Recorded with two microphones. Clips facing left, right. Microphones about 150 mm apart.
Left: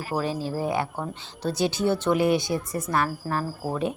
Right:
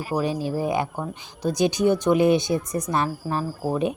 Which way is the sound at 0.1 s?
15° right (ahead or behind).